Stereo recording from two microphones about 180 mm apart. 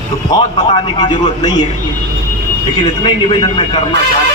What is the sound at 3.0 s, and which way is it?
Speech, 25° left (ahead or behind).